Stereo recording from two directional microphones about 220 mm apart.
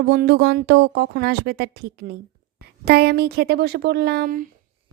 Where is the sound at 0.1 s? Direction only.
50° right (ahead or behind).